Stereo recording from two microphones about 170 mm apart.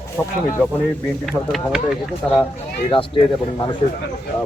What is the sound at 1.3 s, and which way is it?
Speech, centre (ahead or behind).